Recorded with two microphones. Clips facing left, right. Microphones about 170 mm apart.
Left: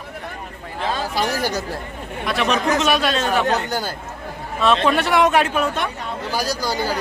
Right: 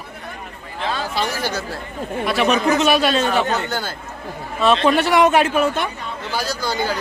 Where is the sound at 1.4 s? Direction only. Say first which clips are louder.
Left 1 dB; 15° left (ahead or behind).